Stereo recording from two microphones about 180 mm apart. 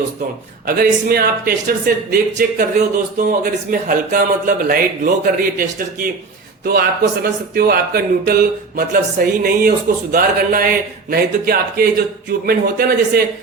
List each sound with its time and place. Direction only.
0.6 s speech: 55° right (ahead or behind)